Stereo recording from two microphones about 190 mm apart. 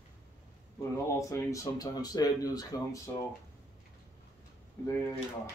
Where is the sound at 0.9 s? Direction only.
15° left (ahead or behind).